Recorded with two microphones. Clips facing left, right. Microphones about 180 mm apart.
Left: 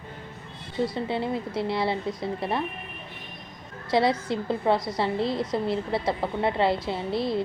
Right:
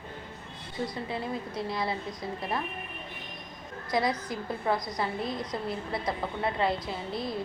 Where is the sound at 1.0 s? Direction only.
25° left (ahead or behind).